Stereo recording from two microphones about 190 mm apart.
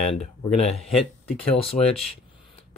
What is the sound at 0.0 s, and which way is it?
Speech, 35° left (ahead or behind).